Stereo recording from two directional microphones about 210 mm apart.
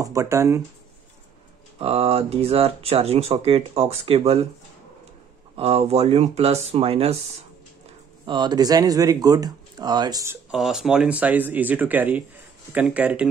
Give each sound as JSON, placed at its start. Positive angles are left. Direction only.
{"t": 0.0, "sound": "speech", "side_deg": -15}
{"t": 1.8, "sound": "speech", "side_deg": -30}
{"t": 5.6, "sound": "speech", "side_deg": -30}
{"t": 10.5, "sound": "speech", "side_deg": 0}